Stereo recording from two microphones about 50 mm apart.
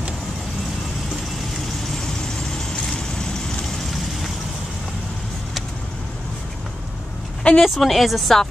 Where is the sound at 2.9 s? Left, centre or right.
Centre.